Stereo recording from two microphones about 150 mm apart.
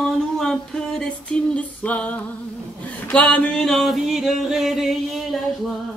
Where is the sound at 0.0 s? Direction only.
Centre (ahead or behind).